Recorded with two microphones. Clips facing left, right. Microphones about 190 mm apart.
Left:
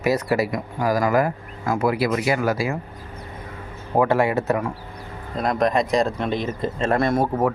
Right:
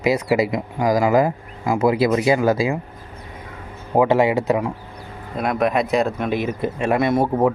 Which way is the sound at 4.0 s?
15° right (ahead or behind).